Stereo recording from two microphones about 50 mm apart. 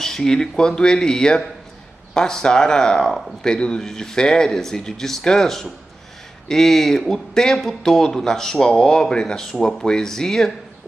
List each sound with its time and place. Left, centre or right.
0.0 s a man's voice: centre